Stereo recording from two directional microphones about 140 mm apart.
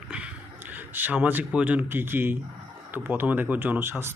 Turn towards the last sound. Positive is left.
turn(degrees=-15)  # may be behind; listen again after turning